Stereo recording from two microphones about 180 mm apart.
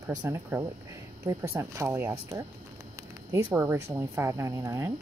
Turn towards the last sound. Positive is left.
turn(degrees=-15)  # may be behind; listen again after turning